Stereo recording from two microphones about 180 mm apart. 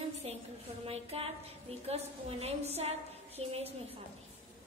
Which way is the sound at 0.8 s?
35° right (ahead or behind).